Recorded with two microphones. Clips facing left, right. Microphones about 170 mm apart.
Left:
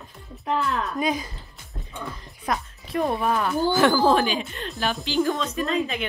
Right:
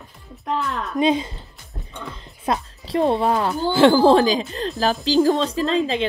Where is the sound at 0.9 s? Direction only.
25° right (ahead or behind).